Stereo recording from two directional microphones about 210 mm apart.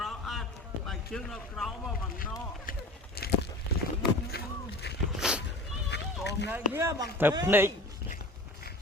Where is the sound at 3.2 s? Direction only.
45° left (ahead or behind).